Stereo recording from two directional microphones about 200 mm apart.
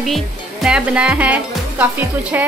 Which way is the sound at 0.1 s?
Centre (ahead or behind).